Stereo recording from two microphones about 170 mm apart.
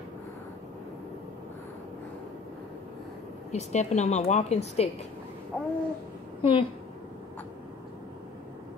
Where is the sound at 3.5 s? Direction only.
40° left (ahead or behind).